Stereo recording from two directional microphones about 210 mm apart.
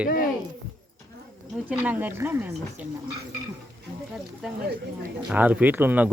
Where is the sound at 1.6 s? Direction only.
5° right (ahead or behind).